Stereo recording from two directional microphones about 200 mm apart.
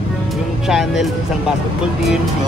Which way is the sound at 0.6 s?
Centre (ahead or behind).